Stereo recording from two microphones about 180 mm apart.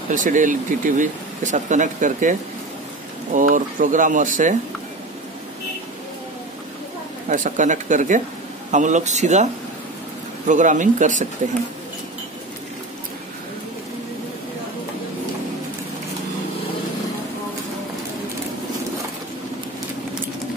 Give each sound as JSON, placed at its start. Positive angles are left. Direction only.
{"t": 0.1, "sound": "speech", "side_deg": -45}
{"t": 3.3, "sound": "speech", "side_deg": -45}
{"t": 7.2, "sound": "speech", "side_deg": -45}